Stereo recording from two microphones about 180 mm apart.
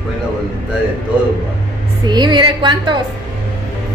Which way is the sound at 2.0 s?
25° right (ahead or behind).